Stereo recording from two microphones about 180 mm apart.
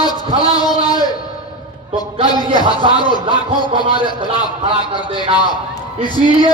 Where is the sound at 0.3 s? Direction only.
20° left (ahead or behind).